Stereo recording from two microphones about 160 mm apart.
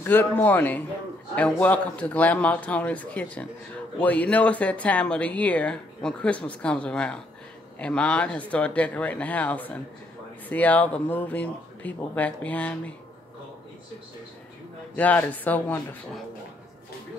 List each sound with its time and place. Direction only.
0.0 s speech: 15° left (ahead or behind)
15.0 s speech: 10° left (ahead or behind)